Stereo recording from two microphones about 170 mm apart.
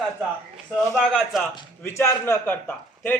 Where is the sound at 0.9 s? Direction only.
Centre (ahead or behind).